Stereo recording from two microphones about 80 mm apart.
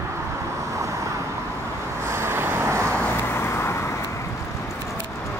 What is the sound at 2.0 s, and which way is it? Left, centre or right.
Vehicle, right.